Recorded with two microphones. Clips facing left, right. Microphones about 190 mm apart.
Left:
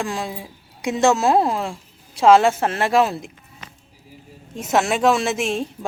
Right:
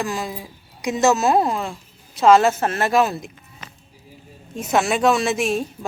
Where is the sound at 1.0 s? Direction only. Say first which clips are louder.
Even; 5° right (ahead or behind).